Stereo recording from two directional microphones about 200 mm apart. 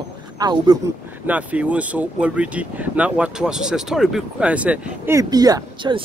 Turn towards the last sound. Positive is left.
turn(degrees=-20)  # may be behind; listen again after turning